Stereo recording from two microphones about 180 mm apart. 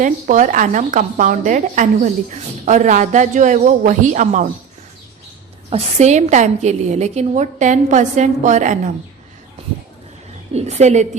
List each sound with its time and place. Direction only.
0.0 s a woman's voice: 45° right (ahead or behind)
5.7 s a woman's voice: 40° right (ahead or behind)
10.5 s a woman's voice: 35° right (ahead or behind)